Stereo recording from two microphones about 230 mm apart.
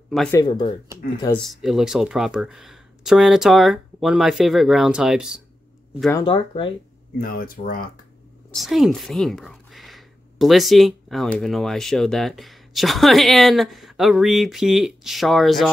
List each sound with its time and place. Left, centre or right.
0.1 s speech: centre
0.4 s speech: centre
1.5 s speech: centre
6.1 s speech: left
7.2 s speech: left
8.5 s speech: centre